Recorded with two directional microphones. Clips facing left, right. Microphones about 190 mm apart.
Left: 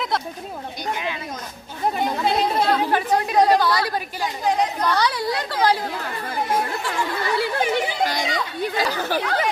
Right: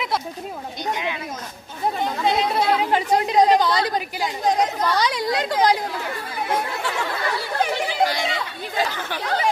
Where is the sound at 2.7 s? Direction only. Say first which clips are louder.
Even; 15° right (ahead or behind).